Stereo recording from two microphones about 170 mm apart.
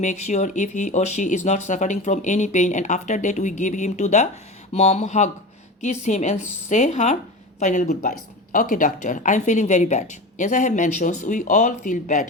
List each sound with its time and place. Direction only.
0.0 s a woman's voice: 45° left (ahead or behind)